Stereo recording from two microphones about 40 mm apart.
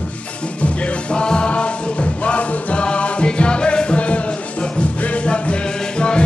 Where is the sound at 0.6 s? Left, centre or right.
Left.